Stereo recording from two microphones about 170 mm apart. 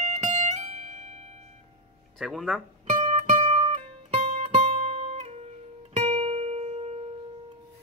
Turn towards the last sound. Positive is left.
turn(degrees=-35)  # may be behind; listen again after turning